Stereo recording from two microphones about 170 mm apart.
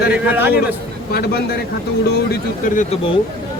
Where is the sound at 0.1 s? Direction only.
10° right (ahead or behind).